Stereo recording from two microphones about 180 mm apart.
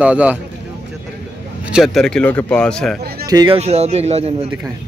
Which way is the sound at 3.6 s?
35° right (ahead or behind).